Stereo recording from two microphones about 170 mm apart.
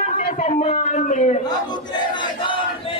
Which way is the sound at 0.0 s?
40° left (ahead or behind).